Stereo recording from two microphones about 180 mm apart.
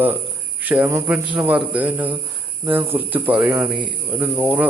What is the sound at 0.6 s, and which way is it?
Speech, 10° right (ahead or behind).